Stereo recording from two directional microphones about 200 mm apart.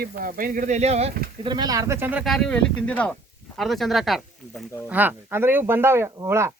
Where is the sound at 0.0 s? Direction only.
45° right (ahead or behind).